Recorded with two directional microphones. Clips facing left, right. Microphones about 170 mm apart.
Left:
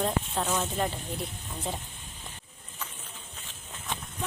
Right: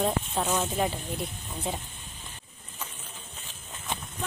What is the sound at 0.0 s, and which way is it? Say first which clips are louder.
Speech: right 1 dB; 10° right (ahead or behind).